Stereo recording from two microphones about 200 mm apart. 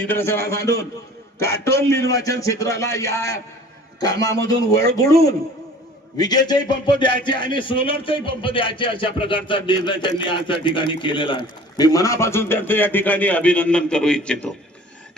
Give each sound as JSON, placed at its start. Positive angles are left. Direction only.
{"t": 0.0, "sound": "a man's voice", "side_deg": 10}